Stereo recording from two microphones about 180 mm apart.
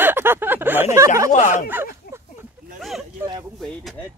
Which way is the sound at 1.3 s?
45° left (ahead or behind).